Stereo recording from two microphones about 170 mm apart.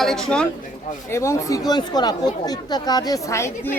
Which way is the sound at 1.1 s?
15° left (ahead or behind).